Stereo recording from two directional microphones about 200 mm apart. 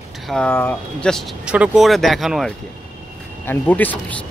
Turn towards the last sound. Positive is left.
turn(degrees=5)  # may be behind; listen again after turning